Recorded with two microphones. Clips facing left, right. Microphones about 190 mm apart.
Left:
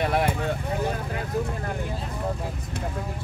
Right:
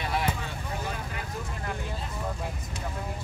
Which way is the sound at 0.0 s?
55° left (ahead or behind).